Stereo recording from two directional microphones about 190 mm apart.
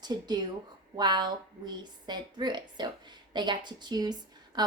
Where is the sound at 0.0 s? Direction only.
20° right (ahead or behind).